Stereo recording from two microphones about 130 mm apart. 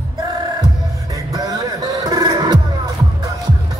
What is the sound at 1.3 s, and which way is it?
Music, 30° right (ahead or behind).